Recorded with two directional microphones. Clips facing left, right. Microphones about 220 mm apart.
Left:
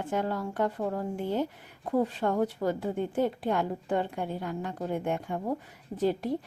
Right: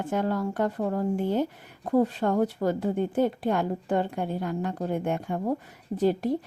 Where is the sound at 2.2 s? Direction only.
45° right (ahead or behind).